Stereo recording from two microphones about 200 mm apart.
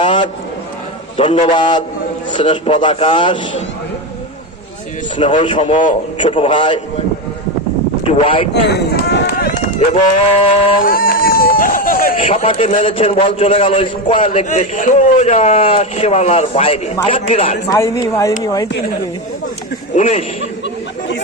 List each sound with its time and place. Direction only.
0.0 s a sound: 25° left (ahead or behind)
1.1 s a man's voice: 30° left (ahead or behind)
5.4 s a man's voice: 25° left (ahead or behind)
8.0 s speech: 25° left (ahead or behind)
8.5 s speech: 55° left (ahead or behind)
9.9 s a man's voice: 30° left (ahead or behind)
10.8 s a sound: 45° left (ahead or behind)
12.1 s a man's voice: 30° left (ahead or behind)
17.7 s speech: 15° left (ahead or behind)
20.0 s speech: 35° left (ahead or behind)